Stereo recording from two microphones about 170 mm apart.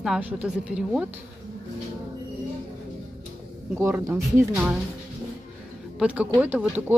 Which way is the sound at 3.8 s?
15° right (ahead or behind).